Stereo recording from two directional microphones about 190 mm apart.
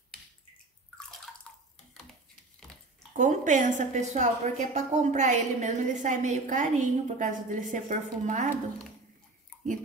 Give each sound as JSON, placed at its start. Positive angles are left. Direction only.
{"t": 3.2, "sound": "a woman's voice", "side_deg": -40}